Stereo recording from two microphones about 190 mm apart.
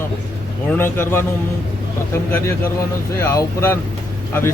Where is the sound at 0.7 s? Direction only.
10° left (ahead or behind).